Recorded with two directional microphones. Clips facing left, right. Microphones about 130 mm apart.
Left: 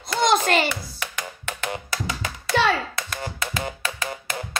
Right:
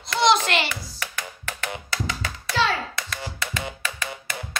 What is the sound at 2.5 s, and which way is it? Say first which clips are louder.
Hands: left 3 dB; 60° left (ahead or behind).